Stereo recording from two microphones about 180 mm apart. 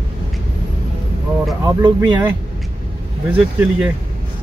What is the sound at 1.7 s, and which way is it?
Speech, 25° right (ahead or behind).